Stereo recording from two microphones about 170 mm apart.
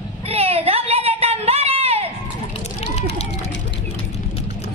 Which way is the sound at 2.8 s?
40° left (ahead or behind).